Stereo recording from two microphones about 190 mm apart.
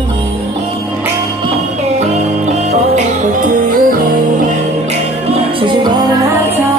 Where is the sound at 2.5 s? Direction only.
35° right (ahead or behind).